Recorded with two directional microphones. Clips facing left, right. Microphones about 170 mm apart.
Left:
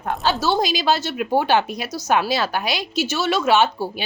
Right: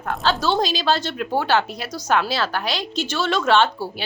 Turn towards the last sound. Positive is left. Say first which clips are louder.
# left 1 dB
turn(degrees=10)  # may be behind; listen again after turning